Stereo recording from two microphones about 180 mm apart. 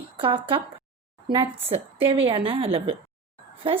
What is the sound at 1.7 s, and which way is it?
A woman's voice, 30° right (ahead or behind).